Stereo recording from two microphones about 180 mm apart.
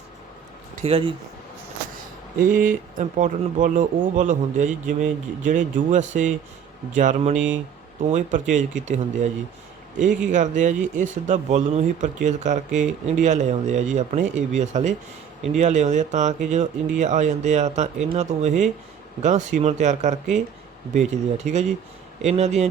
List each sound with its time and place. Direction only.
0.9 s speech: 30° right (ahead or behind)
2.4 s speech: 50° right (ahead or behind)
10.3 s speech: 45° right (ahead or behind)